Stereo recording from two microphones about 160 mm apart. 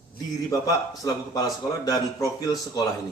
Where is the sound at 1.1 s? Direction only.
25° left (ahead or behind).